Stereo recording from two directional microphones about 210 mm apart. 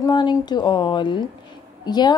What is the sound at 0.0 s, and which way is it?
A woman's voice, 20° left (ahead or behind).